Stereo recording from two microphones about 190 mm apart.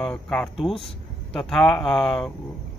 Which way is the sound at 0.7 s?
30° left (ahead or behind).